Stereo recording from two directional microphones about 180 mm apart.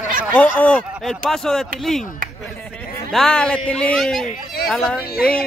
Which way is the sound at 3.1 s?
5° left (ahead or behind).